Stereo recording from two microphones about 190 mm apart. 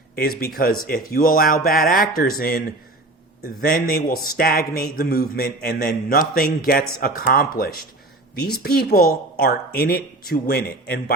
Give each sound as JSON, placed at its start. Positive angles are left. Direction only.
{"t": 0.2, "sound": "a man's voice", "side_deg": 50}